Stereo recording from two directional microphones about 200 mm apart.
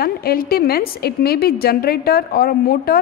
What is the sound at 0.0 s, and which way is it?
A woman's voice, 50° left (ahead or behind).